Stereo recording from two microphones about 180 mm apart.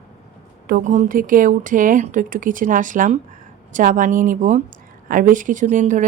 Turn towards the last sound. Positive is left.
turn(degrees=-45)  # may be behind; listen again after turning